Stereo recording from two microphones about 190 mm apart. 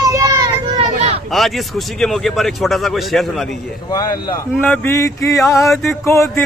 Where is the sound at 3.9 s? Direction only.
20° left (ahead or behind).